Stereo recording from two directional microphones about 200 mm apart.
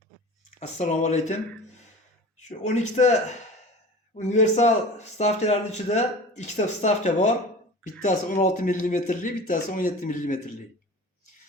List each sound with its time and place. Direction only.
0.6 s speech: 35° left (ahead or behind)